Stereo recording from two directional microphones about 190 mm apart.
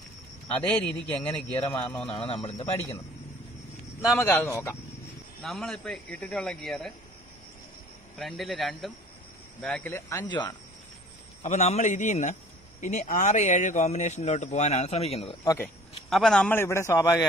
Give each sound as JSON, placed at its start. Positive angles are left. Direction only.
{"t": 0.5, "sound": "speech", "side_deg": 5}
{"t": 2.0, "sound": "speech", "side_deg": 30}
{"t": 4.1, "sound": "a man's voice", "side_deg": 15}
{"t": 8.2, "sound": "a man's voice", "side_deg": 0}
{"t": 11.4, "sound": "a man's voice", "side_deg": 35}
{"t": 15.4, "sound": "a man's voice", "side_deg": 15}
{"t": 16.1, "sound": "a man's voice", "side_deg": 0}